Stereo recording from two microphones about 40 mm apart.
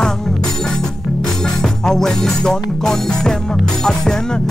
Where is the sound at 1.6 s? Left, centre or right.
Centre.